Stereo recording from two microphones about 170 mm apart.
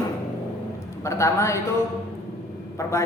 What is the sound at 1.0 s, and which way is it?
Speech, 15° left (ahead or behind).